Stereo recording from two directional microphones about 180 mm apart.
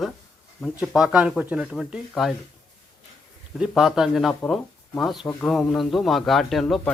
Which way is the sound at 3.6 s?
Centre (ahead or behind).